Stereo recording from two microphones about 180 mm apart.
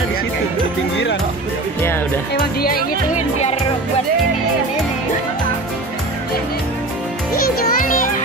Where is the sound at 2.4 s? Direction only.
55° left (ahead or behind).